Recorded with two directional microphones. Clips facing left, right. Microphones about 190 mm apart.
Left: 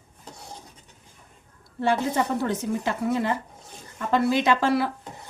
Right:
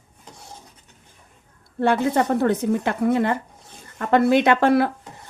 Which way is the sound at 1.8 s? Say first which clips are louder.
Right 4 dB; 60° right (ahead or behind).